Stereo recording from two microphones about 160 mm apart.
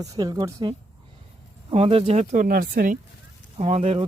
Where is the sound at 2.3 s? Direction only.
60° right (ahead or behind).